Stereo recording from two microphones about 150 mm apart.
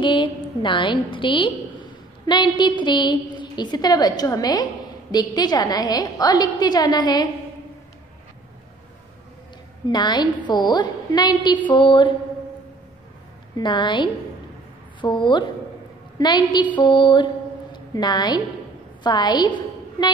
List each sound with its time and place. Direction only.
0.0 s a woman's voice: 30° left (ahead or behind)
9.8 s a woman's voice: 30° left (ahead or behind)
13.6 s a woman's voice: 30° left (ahead or behind)